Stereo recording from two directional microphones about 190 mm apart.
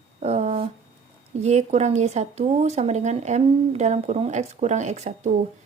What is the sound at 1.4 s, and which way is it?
Speech, 35° right (ahead or behind).